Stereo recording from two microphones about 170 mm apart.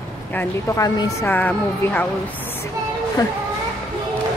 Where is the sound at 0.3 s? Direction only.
15° left (ahead or behind).